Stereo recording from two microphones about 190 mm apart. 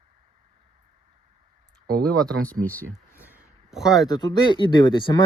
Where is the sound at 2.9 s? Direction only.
10° right (ahead or behind).